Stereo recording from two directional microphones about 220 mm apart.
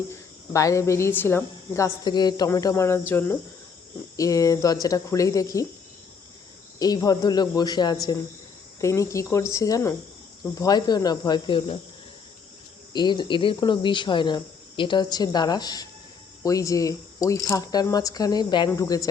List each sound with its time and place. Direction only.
0.1 s speech: 15° left (ahead or behind)
6.7 s speech: 15° left (ahead or behind)
12.9 s speech: 20° left (ahead or behind)